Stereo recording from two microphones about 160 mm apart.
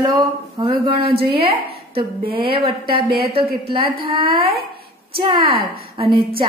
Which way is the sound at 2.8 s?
70° right (ahead or behind).